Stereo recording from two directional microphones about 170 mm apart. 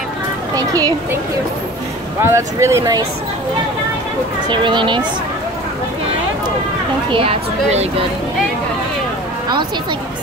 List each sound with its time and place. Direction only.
0.6 s a child's voice: 20° right (ahead or behind)
4.5 s a child's voice: 30° right (ahead or behind)
7.1 s a woman's voice: 35° right (ahead or behind)